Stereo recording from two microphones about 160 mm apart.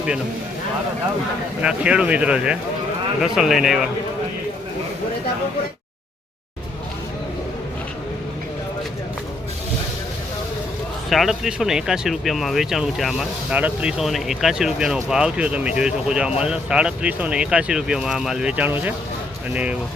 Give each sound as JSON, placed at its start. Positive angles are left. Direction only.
{"t": 1.6, "sound": "speech", "side_deg": -5}
{"t": 11.1, "sound": "speech", "side_deg": 0}